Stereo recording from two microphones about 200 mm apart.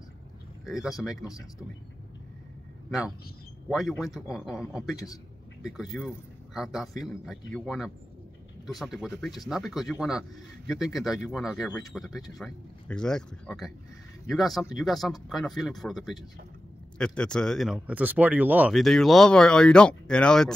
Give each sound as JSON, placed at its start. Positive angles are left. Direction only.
{"t": 0.8, "sound": "speech", "side_deg": 0}
{"t": 1.2, "sound": "speech", "side_deg": 15}
{"t": 3.7, "sound": "a man's voice", "side_deg": 0}